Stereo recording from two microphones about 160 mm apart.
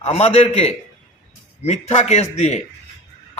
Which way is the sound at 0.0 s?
40° left (ahead or behind).